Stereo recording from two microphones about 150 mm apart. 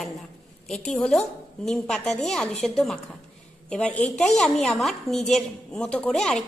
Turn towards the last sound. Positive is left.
turn(degrees=5)  # may be behind; listen again after turning